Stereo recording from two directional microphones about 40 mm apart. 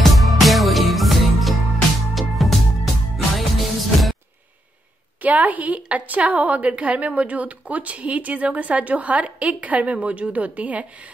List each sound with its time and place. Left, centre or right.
0.0 s music: centre
5.2 s a woman's voice: right